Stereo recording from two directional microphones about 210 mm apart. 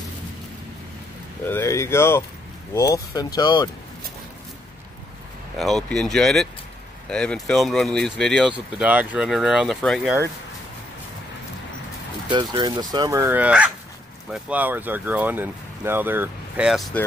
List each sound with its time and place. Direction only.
1.4 s speech: 10° left (ahead or behind)
5.6 s speech: centre (ahead or behind)
12.3 s speech: 20° right (ahead or behind); by 17.0 s centre (ahead or behind)